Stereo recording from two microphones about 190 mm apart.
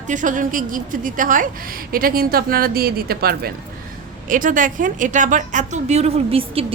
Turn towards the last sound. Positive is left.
turn(degrees=-30)  # may be behind; listen again after turning